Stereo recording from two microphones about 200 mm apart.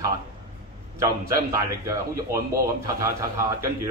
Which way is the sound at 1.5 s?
15° right (ahead or behind).